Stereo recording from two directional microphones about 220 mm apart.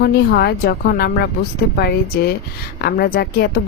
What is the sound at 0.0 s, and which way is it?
A woman's voice, 45° left (ahead or behind).